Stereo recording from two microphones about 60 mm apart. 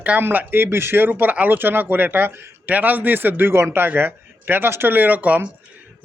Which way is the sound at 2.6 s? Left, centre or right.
Right.